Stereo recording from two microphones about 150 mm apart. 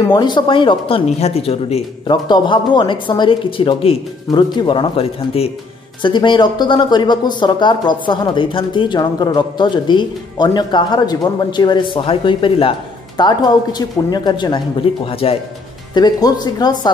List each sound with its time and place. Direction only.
0.1 s speech: 30° left (ahead or behind)
15.9 s speech: 25° left (ahead or behind)